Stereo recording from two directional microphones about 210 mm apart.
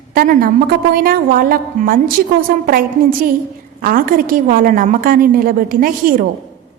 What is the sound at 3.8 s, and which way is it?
A woman's voice, 40° right (ahead or behind).